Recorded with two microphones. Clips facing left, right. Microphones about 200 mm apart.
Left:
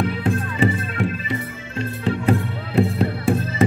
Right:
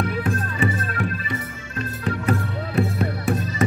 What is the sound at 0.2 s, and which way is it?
Music, 25° left (ahead or behind).